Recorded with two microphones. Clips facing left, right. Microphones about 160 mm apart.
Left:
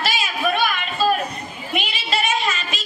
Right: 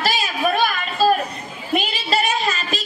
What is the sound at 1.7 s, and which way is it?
Child singing, 35° right (ahead or behind).